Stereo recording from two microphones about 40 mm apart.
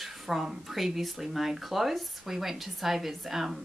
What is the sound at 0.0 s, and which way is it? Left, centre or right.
Speech, centre.